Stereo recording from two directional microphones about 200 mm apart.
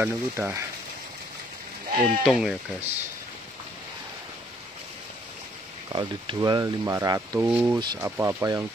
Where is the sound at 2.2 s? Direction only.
5° right (ahead or behind).